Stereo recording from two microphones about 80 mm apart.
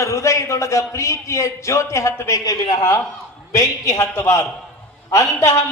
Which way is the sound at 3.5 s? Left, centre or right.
Left.